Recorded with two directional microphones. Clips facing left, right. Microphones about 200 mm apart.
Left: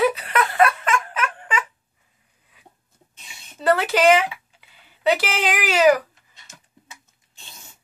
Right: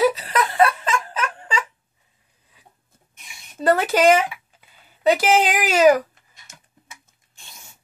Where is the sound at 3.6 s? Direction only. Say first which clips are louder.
Right 1 dB; 45° right (ahead or behind).